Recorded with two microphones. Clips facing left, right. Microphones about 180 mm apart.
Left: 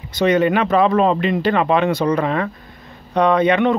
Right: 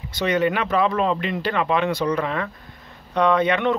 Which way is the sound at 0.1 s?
20° left (ahead or behind).